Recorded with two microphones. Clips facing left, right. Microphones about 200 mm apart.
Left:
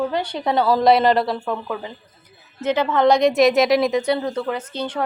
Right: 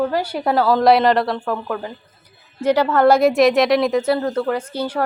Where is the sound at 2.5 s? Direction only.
10° right (ahead or behind).